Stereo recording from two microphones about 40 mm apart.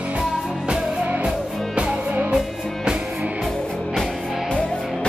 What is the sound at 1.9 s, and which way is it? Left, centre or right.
Music, centre.